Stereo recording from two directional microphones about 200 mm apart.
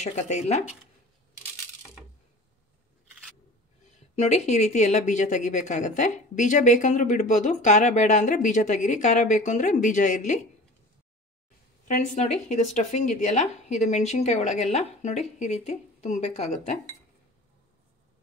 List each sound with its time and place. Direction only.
0.0 s speech: 35° left (ahead or behind)
4.1 s speech: 35° left (ahead or behind)
11.9 s speech: 40° left (ahead or behind)